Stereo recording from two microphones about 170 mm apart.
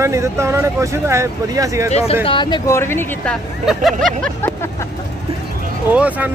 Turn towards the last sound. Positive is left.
turn(degrees=-10)  # may be behind; listen again after turning